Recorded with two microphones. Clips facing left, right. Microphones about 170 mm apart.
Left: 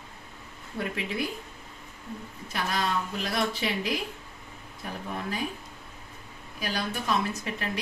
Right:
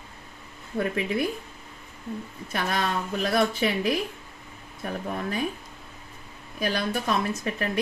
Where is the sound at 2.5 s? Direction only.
55° right (ahead or behind).